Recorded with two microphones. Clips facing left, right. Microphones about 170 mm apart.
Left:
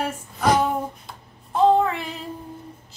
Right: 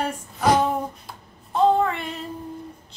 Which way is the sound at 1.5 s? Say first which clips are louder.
Left 1 dB; centre (ahead or behind).